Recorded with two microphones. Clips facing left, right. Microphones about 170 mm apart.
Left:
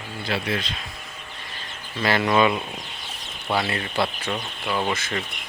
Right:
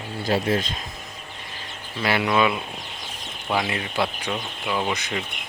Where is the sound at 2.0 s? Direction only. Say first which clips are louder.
Left 1 dB; 10° right (ahead or behind).